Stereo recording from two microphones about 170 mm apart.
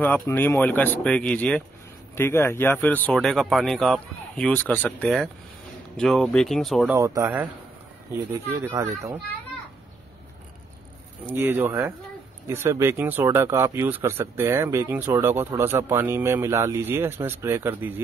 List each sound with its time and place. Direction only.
0.0 s speech: 10° left (ahead or behind)
6.9 s speech: 15° right (ahead or behind)
11.2 s speech: 15° right (ahead or behind)